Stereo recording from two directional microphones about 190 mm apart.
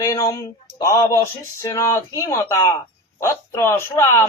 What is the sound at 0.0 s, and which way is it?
Speech, 15° left (ahead or behind).